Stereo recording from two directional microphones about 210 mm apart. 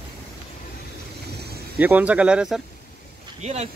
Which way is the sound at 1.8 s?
10° right (ahead or behind).